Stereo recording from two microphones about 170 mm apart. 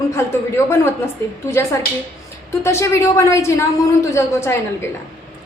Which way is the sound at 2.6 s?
15° left (ahead or behind).